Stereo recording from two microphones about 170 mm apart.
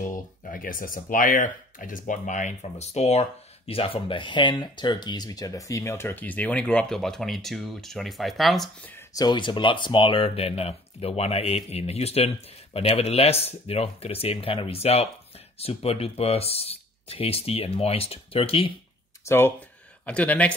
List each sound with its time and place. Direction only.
0.1 s speech: 50° left (ahead or behind); by 8.9 s centre (ahead or behind)
8.9 s speech: 20° left (ahead or behind)
19.2 s speech: 15° left (ahead or behind)